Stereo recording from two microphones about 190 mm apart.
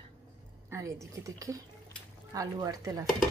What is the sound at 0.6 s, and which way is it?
A woman's voice, 15° right (ahead or behind).